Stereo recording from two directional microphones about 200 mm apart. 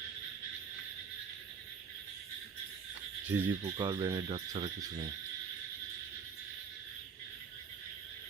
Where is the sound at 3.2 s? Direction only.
10° right (ahead or behind).